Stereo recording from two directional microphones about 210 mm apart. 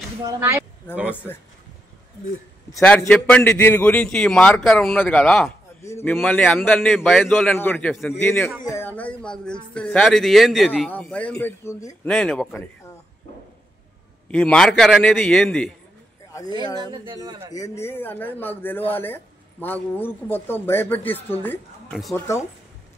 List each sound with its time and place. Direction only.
0.2 s speech: 15° right (ahead or behind)
2.8 s speech: 5° left (ahead or behind)
14.3 s speech: 5° left (ahead or behind)
16.8 s speech: 25° right (ahead or behind)
17.6 s speech: 10° left (ahead or behind)